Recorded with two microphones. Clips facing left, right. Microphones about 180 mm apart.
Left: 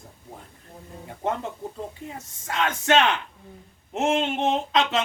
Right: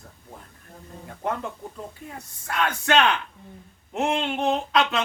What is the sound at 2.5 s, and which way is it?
Speech, 20° left (ahead or behind).